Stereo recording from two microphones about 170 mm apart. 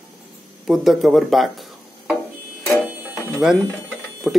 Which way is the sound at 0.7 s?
Centre (ahead or behind).